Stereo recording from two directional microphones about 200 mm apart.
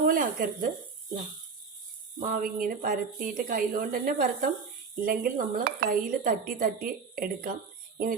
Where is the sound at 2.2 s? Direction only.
45° right (ahead or behind).